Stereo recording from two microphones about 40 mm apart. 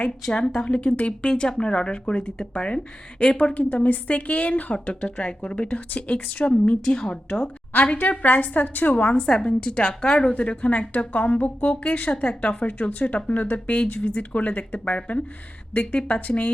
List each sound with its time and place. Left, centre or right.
0.3 s speech: centre
0.8 s speech: left
1.3 s speech: left
6.8 s speech: left
7.9 s a woman's voice: left
9.1 s speech: left
9.5 s a woman's voice: left